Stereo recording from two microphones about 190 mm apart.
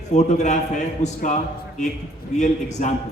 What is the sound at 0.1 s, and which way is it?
A man's voice, 35° left (ahead or behind).